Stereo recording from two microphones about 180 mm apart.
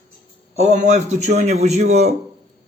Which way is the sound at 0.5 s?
40° right (ahead or behind).